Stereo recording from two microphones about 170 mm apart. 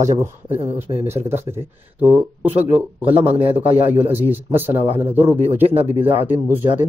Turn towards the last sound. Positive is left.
turn(degrees=-10)  # may be behind; listen again after turning